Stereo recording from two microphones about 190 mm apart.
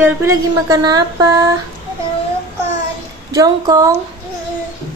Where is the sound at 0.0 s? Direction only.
15° right (ahead or behind).